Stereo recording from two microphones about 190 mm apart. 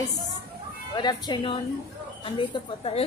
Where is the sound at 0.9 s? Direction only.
20° left (ahead or behind).